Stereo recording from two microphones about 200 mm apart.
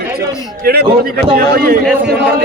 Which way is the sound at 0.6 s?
50° right (ahead or behind).